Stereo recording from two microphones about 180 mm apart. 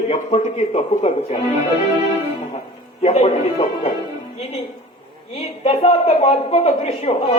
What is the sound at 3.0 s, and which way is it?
Speech, 35° left (ahead or behind).